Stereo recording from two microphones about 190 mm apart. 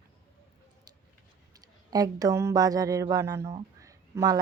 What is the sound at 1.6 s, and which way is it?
Speech, 20° right (ahead or behind).